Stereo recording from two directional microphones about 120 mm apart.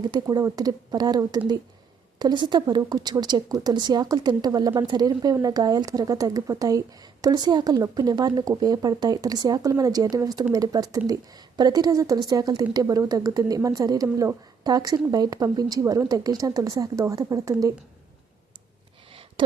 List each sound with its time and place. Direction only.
0.0 s a woman's voice: 35° right (ahead or behind)